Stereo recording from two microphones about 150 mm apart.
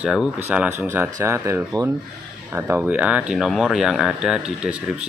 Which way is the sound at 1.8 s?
30° right (ahead or behind).